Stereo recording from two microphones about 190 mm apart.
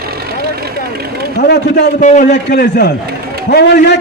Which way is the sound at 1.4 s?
55° left (ahead or behind).